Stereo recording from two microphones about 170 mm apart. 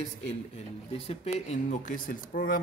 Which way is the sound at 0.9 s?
40° left (ahead or behind).